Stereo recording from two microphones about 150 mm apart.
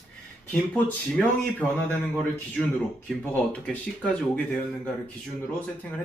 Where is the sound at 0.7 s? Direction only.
10° left (ahead or behind).